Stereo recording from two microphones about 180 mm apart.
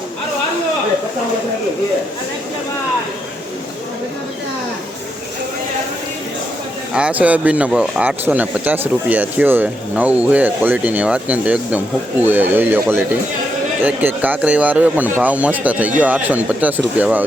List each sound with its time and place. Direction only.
6.9 s speech: 5° right (ahead or behind)